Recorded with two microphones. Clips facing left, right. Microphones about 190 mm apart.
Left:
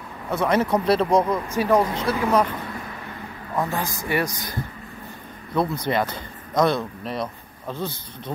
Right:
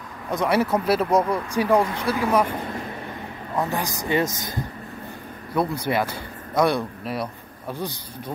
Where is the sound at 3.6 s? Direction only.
15° right (ahead or behind).